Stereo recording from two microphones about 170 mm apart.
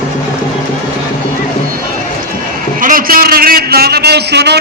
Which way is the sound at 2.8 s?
55° right (ahead or behind).